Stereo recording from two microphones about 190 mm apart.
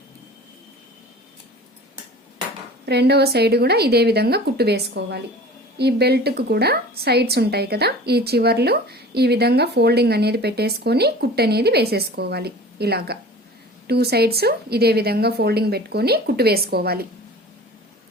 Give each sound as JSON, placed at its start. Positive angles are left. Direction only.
{"t": 2.8, "sound": "a woman's voice", "side_deg": -60}